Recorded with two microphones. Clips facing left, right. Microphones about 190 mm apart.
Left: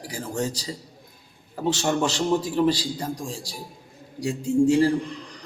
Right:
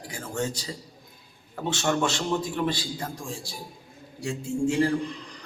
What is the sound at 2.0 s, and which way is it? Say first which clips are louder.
A man's voice: left 4 dB; 35° left (ahead or behind).